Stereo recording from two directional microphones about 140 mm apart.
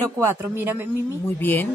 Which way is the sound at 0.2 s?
15° right (ahead or behind).